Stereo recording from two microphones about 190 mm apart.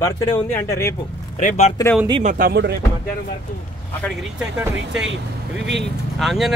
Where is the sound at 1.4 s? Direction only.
40° left (ahead or behind).